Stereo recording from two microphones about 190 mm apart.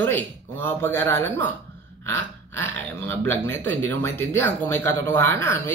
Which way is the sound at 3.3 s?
10° left (ahead or behind).